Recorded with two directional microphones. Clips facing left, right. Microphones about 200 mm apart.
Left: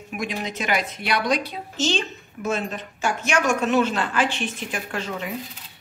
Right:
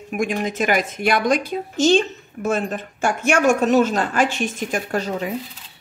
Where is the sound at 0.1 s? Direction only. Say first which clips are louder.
Right 7 dB; 50° right (ahead or behind).